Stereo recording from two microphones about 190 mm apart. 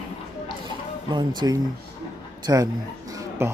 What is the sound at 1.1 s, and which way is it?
Speech, 25° right (ahead or behind).